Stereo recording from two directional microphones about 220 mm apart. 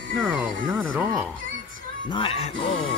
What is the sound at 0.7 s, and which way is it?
Music, 10° right (ahead or behind).